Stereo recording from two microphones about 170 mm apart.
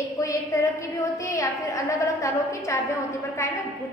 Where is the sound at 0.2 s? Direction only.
20° left (ahead or behind).